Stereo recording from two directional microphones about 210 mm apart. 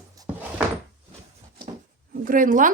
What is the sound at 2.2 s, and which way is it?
Speech, 40° right (ahead or behind).